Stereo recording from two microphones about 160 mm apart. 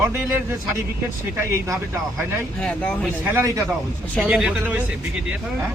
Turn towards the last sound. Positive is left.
turn(degrees=-5)  # may be behind; listen again after turning